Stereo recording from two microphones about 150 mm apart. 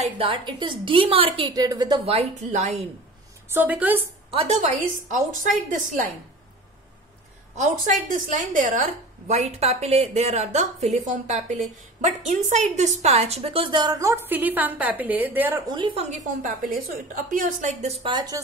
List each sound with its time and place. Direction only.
0.0 s a woman's voice: 40° right (ahead or behind)
2.0 s a woman's voice: 45° right (ahead or behind)
3.4 s a woman's voice: 10° right (ahead or behind)
4.3 s a woman's voice: 45° right (ahead or behind)
5.7 s a woman's voice: 55° right (ahead or behind)
7.5 s a woman's voice: 55° right (ahead or behind); by 15.6 s 10° right (ahead or behind)
15.7 s a woman's voice: 35° right (ahead or behind)
17.1 s a woman's voice: 60° right (ahead or behind); by 18.4 s 30° right (ahead or behind)